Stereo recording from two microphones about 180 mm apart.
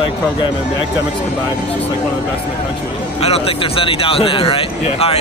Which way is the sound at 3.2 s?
35° left (ahead or behind).